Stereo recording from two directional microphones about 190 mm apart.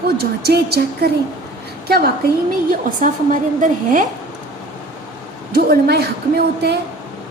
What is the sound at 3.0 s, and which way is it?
A woman's voice, 45° right (ahead or behind).